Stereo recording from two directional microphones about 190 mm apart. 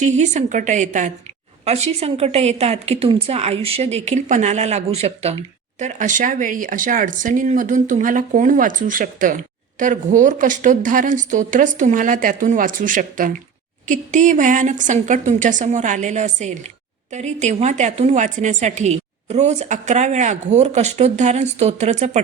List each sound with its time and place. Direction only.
0.0 s a woman's voice: 40° right (ahead or behind)